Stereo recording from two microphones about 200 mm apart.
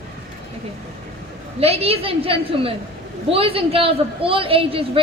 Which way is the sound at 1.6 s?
30° right (ahead or behind).